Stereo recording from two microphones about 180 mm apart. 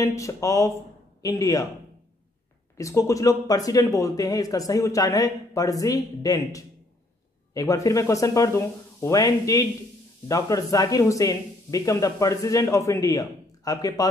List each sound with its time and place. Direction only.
0.0 s speech: 15° left (ahead or behind)
2.8 s speech: 15° left (ahead or behind)